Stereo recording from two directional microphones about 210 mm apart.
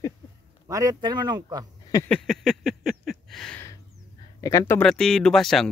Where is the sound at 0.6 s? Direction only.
15° right (ahead or behind).